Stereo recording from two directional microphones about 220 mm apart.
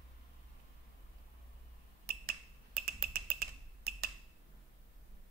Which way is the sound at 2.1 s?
45° right (ahead or behind).